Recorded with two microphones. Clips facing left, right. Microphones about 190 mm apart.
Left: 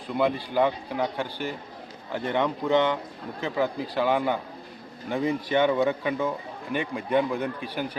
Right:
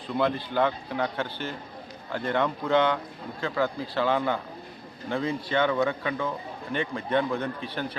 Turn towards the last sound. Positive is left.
turn(degrees=10)  # may be behind; listen again after turning